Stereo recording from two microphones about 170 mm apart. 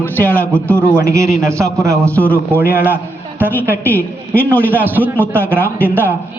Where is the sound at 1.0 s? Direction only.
15° right (ahead or behind).